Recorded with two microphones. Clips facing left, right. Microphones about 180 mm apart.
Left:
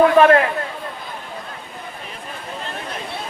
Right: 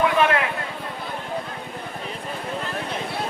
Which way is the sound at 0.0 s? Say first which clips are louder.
Left 8 dB; 40° left (ahead or behind).